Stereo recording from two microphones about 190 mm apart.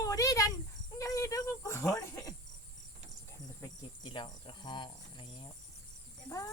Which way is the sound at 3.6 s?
25° left (ahead or behind).